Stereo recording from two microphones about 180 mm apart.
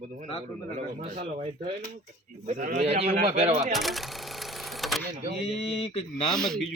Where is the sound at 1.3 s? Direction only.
35° right (ahead or behind).